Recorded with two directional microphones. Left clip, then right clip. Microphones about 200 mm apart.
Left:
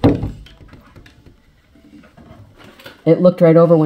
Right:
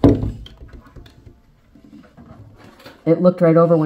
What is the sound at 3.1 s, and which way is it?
Speech, 35° left (ahead or behind).